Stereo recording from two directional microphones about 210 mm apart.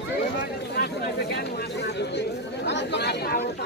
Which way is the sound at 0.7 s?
50° left (ahead or behind).